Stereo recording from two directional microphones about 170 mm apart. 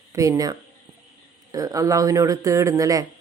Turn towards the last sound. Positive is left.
turn(degrees=-20)  # may be behind; listen again after turning